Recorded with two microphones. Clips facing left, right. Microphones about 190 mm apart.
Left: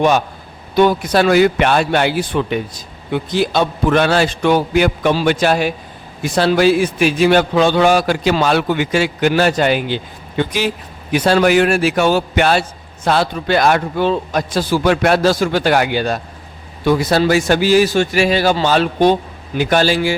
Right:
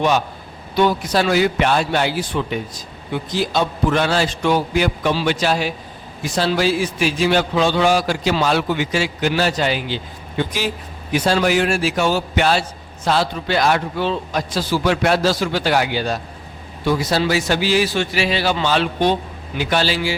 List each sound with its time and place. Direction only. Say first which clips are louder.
0.8 s a man's voice: left 4 dB; 55° left (ahead or behind)